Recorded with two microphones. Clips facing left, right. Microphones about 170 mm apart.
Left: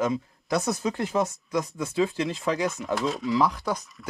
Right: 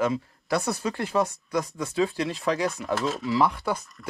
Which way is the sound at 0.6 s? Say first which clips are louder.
Left 2 dB; 20° left (ahead or behind).